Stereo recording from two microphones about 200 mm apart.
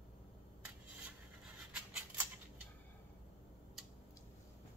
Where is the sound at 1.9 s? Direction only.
10° right (ahead or behind).